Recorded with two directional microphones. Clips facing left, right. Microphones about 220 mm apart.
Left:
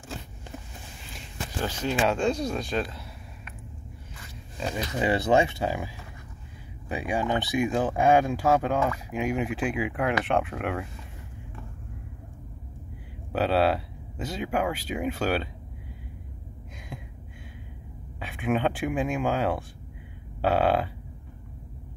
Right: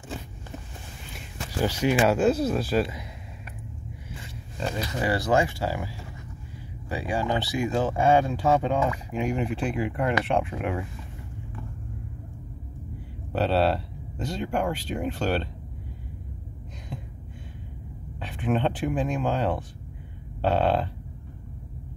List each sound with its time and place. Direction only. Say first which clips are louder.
1.6 s speech: right 4 dB; 10° right (ahead or behind)
4.9 s speech: left 2 dB; 20° left (ahead or behind); by 10.9 s centre (ahead or behind)
13.3 s speech: even; 5° left (ahead or behind)
18.2 s speech: even; 5° left (ahead or behind)